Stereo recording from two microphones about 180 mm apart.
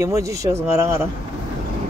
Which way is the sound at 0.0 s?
15° right (ahead or behind).